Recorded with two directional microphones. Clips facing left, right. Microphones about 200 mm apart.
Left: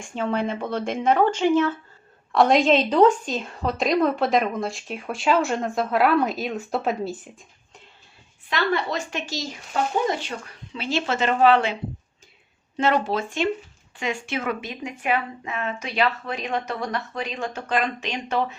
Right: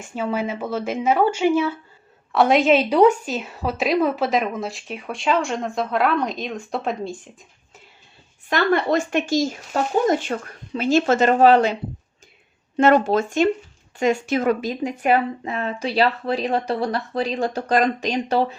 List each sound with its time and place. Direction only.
0.0 s a woman's voice: 5° right (ahead or behind)
8.4 s speech: 50° right (ahead or behind); by 18.5 s 35° right (ahead or behind)